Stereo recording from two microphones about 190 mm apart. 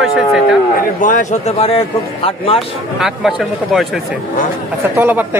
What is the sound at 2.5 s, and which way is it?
Speech, centre (ahead or behind).